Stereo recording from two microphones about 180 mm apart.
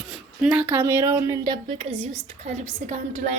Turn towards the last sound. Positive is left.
turn(degrees=-40)  # may be behind; listen again after turning